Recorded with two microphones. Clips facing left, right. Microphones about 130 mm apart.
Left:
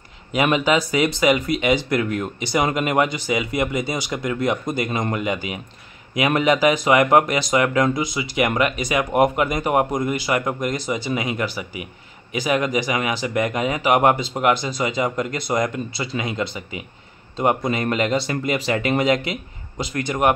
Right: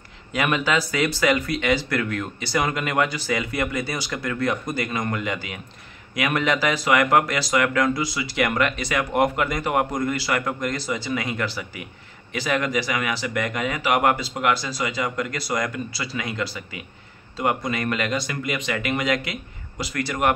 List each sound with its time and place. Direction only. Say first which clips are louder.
0.3 s speech: left 4 dB; 20° left (ahead or behind)